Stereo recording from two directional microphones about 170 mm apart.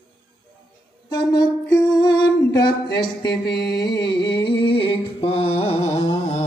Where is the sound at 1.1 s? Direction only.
25° left (ahead or behind).